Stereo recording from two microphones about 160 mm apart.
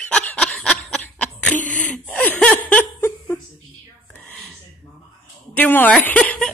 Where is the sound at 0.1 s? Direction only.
5° left (ahead or behind).